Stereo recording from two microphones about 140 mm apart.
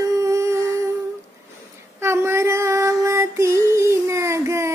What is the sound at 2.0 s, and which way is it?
Female singing, 20° right (ahead or behind).